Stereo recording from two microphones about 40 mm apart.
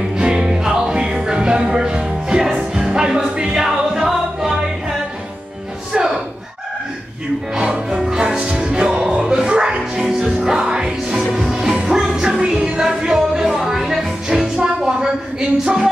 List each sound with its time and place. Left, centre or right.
0.2 s music: centre
5.9 s a sound: centre
7.5 s music: centre
8.9 s music: right; by 10.8 s centre
12.0 s music: centre
13.6 s music: centre
14.6 s a sound: centre